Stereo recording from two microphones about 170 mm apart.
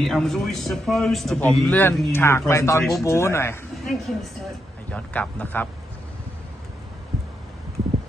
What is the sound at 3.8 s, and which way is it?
A man's voice, centre (ahead or behind).